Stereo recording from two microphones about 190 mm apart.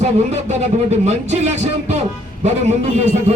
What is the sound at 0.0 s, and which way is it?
Music, 35° right (ahead or behind).